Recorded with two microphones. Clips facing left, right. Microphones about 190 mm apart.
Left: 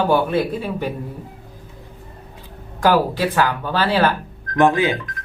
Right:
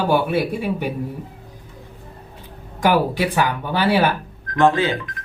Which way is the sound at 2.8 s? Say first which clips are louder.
Left 1 dB; 15° right (ahead or behind).